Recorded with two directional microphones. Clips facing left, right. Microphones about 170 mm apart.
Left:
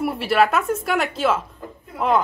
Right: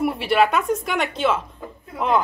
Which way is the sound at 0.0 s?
Centre (ahead or behind).